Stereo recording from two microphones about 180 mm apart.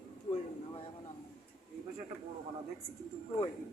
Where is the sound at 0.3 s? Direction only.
30° left (ahead or behind).